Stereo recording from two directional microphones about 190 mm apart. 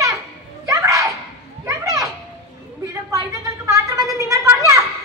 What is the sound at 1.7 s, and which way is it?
Children playing, 15° right (ahead or behind).